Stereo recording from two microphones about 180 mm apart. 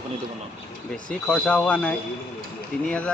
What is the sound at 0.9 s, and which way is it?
Speech, 5° left (ahead or behind).